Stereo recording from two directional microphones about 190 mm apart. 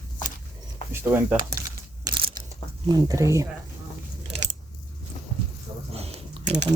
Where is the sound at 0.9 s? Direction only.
10° right (ahead or behind).